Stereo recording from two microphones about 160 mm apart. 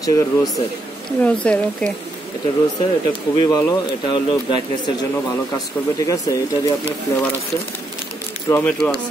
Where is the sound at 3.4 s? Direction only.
20° left (ahead or behind).